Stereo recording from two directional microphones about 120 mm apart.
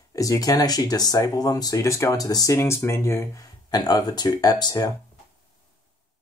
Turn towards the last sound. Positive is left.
turn(degrees=35)  # may be behind; listen again after turning